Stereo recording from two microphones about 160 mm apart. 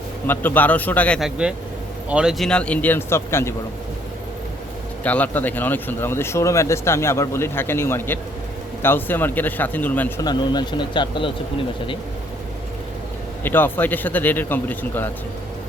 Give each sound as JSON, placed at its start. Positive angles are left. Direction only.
{"t": 0.3, "sound": "speech", "side_deg": 10}
{"t": 2.0, "sound": "speech", "side_deg": -5}
{"t": 5.0, "sound": "speech", "side_deg": 10}
{"t": 10.2, "sound": "speech", "side_deg": 25}
{"t": 13.4, "sound": "speech", "side_deg": 10}